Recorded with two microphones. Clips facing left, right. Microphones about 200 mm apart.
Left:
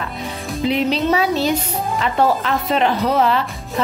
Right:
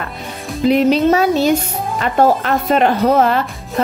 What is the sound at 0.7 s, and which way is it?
A woman's voice, 45° right (ahead or behind).